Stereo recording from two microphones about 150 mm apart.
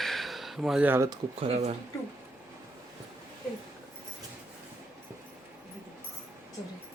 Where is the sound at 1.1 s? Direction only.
40° right (ahead or behind).